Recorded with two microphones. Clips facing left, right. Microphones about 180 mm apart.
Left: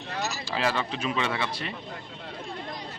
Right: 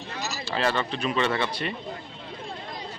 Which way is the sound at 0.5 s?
5° left (ahead or behind).